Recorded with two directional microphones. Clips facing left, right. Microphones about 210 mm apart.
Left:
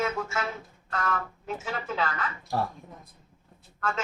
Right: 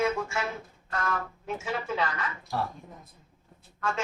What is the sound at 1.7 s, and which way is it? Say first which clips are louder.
Speech: right 1 dB; centre (ahead or behind).